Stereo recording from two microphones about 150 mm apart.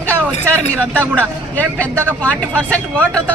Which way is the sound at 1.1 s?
10° left (ahead or behind).